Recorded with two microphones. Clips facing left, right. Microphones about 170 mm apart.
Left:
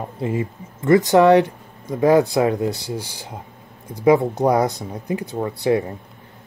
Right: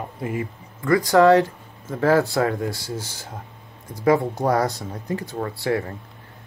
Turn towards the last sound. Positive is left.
turn(degrees=20)  # may be behind; listen again after turning